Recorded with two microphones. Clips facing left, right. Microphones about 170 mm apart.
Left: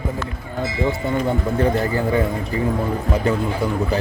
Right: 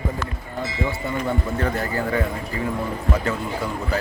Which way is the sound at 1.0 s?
20° left (ahead or behind).